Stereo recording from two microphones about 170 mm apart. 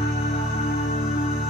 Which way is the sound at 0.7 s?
60° left (ahead or behind).